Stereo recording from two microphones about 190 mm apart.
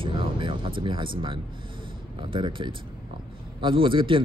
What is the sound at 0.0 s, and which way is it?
Vehicle, 25° right (ahead or behind).